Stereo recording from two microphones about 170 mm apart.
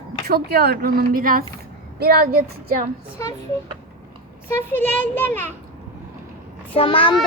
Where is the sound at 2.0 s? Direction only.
65° right (ahead or behind).